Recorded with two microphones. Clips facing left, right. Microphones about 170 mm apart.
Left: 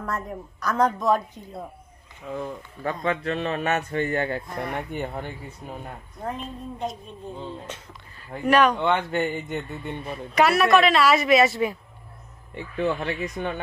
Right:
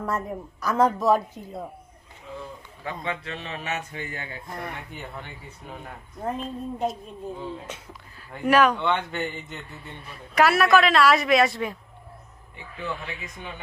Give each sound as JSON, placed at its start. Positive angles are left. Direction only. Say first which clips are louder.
{"t": 0.0, "sound": "a woman's voice", "louder": "right 2 dB", "side_deg": -10}
{"t": 2.3, "sound": "speech", "louder": "left 7 dB", "side_deg": 50}
{"t": 6.2, "sound": "a woman's voice", "louder": "right 2 dB", "side_deg": -5}
{"t": 8.5, "sound": "a woman's voice", "louder": "even", "side_deg": -5}
{"t": 8.8, "sound": "speech", "louder": "left 3 dB", "side_deg": 45}
{"t": 9.7, "sound": "speech", "louder": "left 9 dB", "side_deg": 60}
{"t": 10.3, "sound": "a woman's voice", "louder": "even", "side_deg": 0}
{"t": 12.5, "sound": "speech", "louder": "left 8 dB", "side_deg": 65}